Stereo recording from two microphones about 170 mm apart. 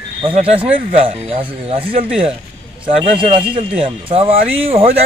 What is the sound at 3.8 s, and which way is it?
Speech, 30° right (ahead or behind).